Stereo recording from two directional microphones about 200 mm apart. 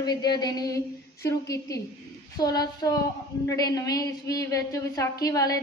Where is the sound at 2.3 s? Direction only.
20° left (ahead or behind).